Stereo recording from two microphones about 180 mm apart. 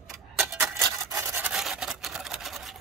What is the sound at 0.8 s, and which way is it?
Rub, 20° right (ahead or behind).